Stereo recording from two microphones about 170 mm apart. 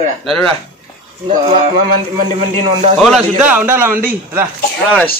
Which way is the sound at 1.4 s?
35° right (ahead or behind).